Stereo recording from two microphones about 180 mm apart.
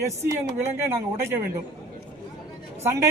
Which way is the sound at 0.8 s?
15° right (ahead or behind).